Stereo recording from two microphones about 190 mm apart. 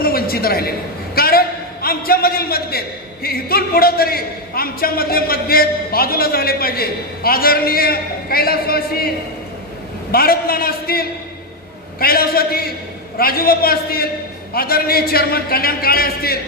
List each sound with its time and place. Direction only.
0.0 s a man's voice: 50° left (ahead or behind)
10.1 s a man's voice: 50° left (ahead or behind)